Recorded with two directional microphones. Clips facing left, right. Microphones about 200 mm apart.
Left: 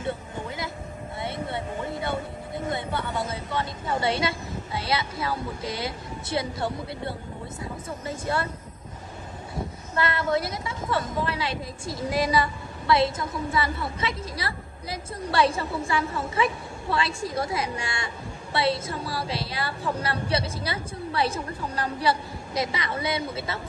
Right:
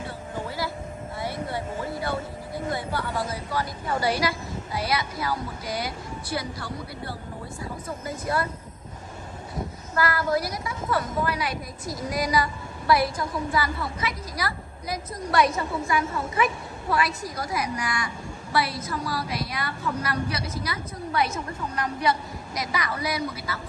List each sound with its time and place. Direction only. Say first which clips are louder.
1.2 s vehicle: even; 25° left (ahead or behind)
7.6 s a woman's voice: even; 25° left (ahead or behind)
9.9 s a woman's voice: right 1 dB; 25° left (ahead or behind)